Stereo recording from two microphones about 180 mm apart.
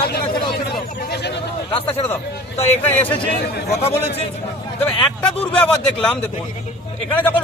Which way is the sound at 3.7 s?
35° left (ahead or behind).